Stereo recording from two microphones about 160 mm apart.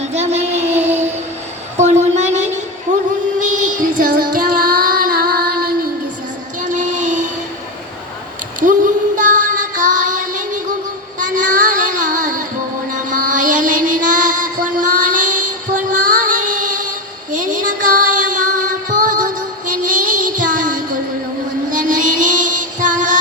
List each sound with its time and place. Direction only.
0.0 s a sound: 45° right (ahead or behind)
3.3 s child singing: 50° right (ahead or behind); by 5.7 s 70° right (ahead or behind)
6.6 s child singing: 50° right (ahead or behind)
8.6 s child singing: 55° right (ahead or behind)
12.9 s music: 55° right (ahead or behind)
17.3 s child singing: 55° right (ahead or behind)
18.9 s music: 55° right (ahead or behind)